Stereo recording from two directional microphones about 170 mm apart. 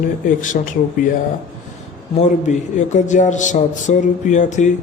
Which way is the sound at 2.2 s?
45° left (ahead or behind).